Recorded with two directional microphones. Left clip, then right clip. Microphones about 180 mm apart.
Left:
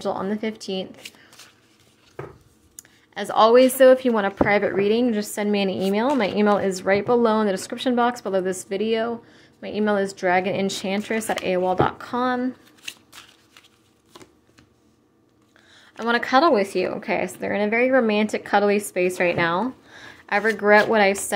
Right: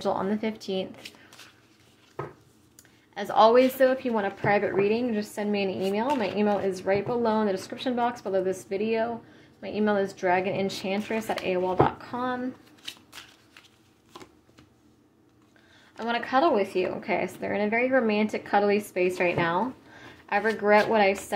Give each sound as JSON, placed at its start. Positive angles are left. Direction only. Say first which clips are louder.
{"t": 0.0, "sound": "speech", "louder": "left 2 dB", "side_deg": 15}
{"t": 2.7, "sound": "a woman's voice", "louder": "left 5 dB", "side_deg": 25}
{"t": 15.7, "sound": "a sound", "louder": "left 5 dB", "side_deg": 20}
{"t": 16.1, "sound": "a woman's voice", "louder": "left 6 dB", "side_deg": 35}